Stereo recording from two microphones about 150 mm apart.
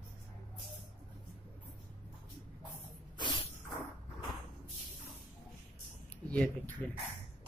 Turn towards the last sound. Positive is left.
turn(degrees=10)  # may be behind; listen again after turning